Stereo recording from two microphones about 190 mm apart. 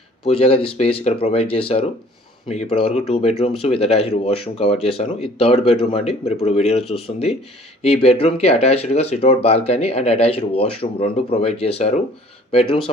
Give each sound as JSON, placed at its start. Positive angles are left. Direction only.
{"t": 0.3, "sound": "speech", "side_deg": 30}
{"t": 8.0, "sound": "speech", "side_deg": 30}